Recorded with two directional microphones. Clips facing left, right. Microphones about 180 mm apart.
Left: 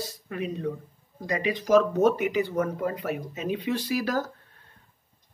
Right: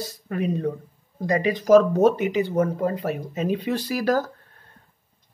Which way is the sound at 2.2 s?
25° right (ahead or behind).